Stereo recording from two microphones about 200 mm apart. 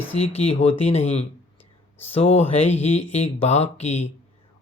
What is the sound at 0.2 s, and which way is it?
Speech, 30° left (ahead or behind).